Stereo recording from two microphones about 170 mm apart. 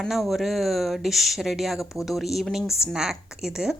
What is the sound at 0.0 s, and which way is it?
Speech, centre (ahead or behind).